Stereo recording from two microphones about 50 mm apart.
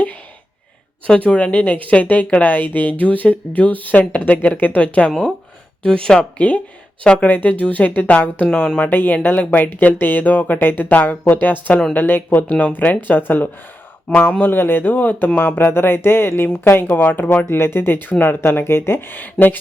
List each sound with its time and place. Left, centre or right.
1.0 s speech: left
4.8 s speech: left
7.3 s speech: left
8.4 s speech: centre
8.8 s speech: left